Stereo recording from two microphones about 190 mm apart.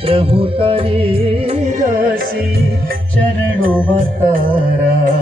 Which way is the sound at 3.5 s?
45° right (ahead or behind).